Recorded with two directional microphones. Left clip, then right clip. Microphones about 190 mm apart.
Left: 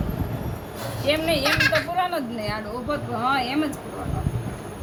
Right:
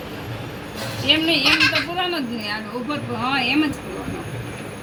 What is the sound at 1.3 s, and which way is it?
A child's voice, 35° left (ahead or behind).